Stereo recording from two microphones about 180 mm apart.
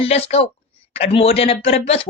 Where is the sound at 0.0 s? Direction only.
35° left (ahead or behind).